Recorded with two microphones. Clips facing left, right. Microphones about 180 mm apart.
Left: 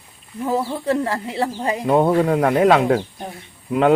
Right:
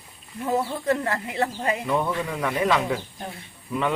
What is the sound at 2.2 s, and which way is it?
Speech, 65° left (ahead or behind).